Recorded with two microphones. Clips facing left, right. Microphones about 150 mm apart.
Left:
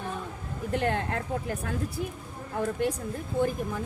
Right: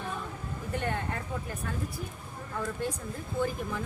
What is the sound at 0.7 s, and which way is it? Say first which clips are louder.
Speech: left 5 dB; 85° left.